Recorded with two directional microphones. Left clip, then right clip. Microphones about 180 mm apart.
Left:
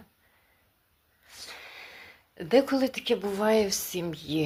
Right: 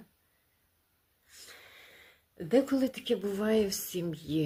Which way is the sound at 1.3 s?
25° right (ahead or behind).